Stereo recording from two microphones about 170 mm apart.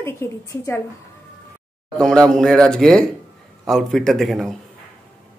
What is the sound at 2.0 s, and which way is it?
Speech, 5° left (ahead or behind).